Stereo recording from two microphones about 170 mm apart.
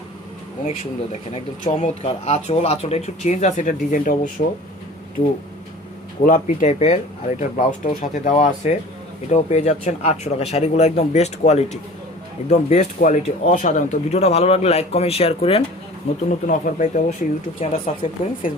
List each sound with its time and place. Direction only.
1.3 s speech: 40° left (ahead or behind)
6.2 s speech: 50° left (ahead or behind)
16.5 s speech: 50° left (ahead or behind)
17.6 s speech: 35° left (ahead or behind)